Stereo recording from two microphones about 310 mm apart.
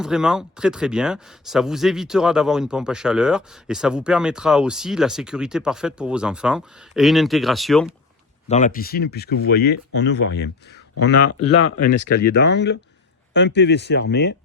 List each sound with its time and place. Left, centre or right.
0.0 s speech: centre
8.4 s speech: left
11.1 s speech: left
12.2 s speech: left